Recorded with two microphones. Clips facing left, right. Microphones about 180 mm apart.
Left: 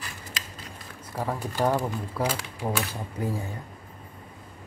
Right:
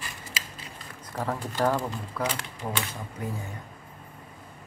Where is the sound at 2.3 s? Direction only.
Centre (ahead or behind).